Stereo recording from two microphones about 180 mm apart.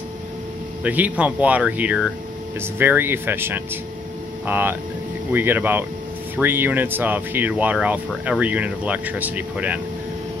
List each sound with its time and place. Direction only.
0.8 s speech: 10° right (ahead or behind)